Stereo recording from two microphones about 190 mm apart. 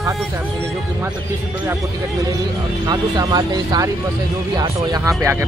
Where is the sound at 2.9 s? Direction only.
20° right (ahead or behind).